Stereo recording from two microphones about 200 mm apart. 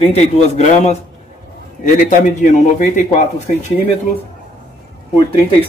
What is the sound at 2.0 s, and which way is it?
Speech, 40° left (ahead or behind).